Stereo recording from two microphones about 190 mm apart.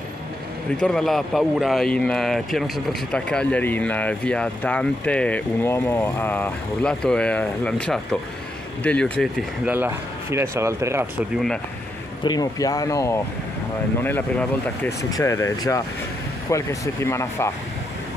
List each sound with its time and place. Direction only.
0.7 s speech: 5° left (ahead or behind)
9.7 s speech: 10° right (ahead or behind)
12.2 s speech: 20° left (ahead or behind)